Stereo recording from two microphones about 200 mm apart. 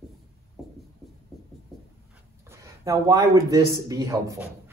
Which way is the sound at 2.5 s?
15° right (ahead or behind).